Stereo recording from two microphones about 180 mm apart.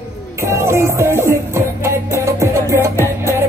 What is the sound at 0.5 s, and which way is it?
Music, 15° right (ahead or behind).